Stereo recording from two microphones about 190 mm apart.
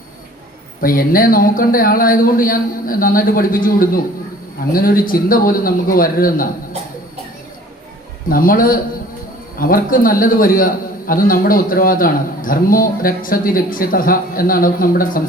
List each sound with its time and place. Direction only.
0.8 s a man's voice: 50° left (ahead or behind)
8.3 s a man's voice: 50° left (ahead or behind)